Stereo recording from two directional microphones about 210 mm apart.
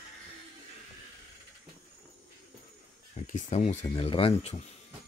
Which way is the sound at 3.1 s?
35° left (ahead or behind).